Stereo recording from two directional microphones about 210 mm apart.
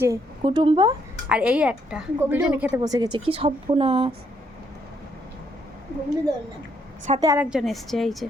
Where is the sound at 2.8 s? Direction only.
20° right (ahead or behind).